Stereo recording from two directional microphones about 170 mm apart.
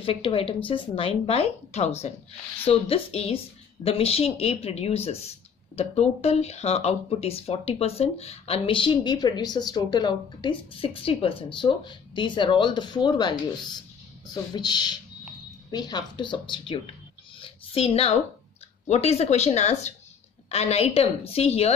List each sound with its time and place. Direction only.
0.0 s a woman's voice: 30° left (ahead or behind)
17.4 s a sound: 35° left (ahead or behind)
18.9 s a woman's voice: 40° left (ahead or behind)